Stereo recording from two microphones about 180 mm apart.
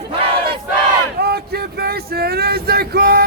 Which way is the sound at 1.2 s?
60° right (ahead or behind).